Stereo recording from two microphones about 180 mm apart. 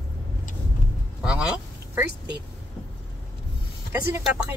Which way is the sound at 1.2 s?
5° right (ahead or behind).